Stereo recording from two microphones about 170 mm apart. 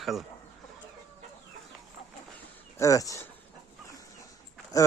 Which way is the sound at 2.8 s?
20° left (ahead or behind).